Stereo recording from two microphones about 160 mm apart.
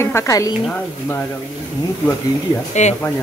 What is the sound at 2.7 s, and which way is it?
Speech, 45° left (ahead or behind).